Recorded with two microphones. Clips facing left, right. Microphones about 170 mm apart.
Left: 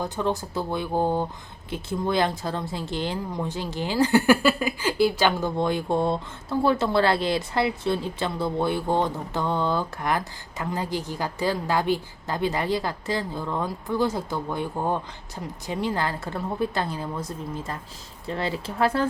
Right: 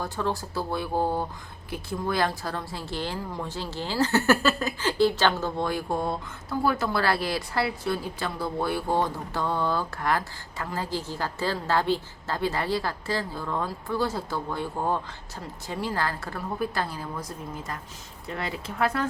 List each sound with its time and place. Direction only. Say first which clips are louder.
0.0 s speech: left 3 dB; 20° left (ahead or behind)